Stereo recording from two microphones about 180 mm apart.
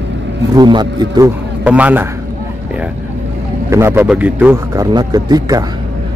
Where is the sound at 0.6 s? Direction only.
25° right (ahead or behind).